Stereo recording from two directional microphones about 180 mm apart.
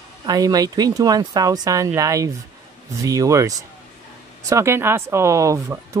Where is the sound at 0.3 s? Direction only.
20° right (ahead or behind).